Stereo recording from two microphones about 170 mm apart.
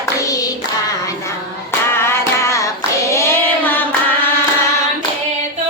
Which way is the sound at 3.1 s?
15° left (ahead or behind).